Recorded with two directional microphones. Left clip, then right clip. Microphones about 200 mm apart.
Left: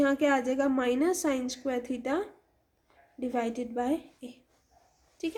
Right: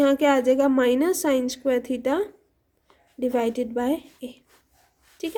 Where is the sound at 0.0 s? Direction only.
45° right (ahead or behind).